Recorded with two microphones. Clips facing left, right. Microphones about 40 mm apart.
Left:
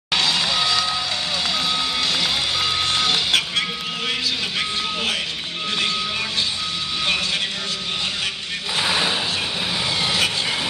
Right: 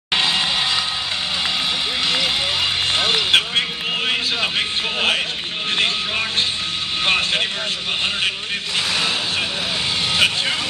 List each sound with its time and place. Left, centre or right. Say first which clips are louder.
0.1 s music: right 1 dB; right
2.0 s run: right 2 dB; right
4.1 s a sound: right 2 dB; right
5.8 s music: right 3 dB; right
7.1 s vehicle: right 5 dB; right
8.8 s vehicle: left 2 dB; centre